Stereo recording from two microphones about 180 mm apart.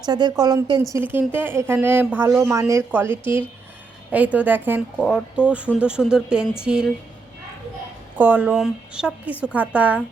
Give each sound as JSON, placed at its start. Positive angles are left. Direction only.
{"t": 0.0, "sound": "a woman's voice", "side_deg": -25}
{"t": 8.2, "sound": "a woman's voice", "side_deg": -10}